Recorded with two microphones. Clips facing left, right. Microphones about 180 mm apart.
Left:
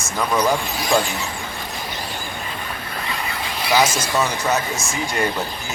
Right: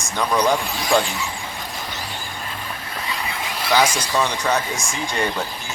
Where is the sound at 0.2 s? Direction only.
5° left (ahead or behind).